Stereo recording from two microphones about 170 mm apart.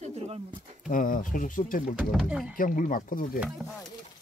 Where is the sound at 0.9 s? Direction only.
50° left (ahead or behind).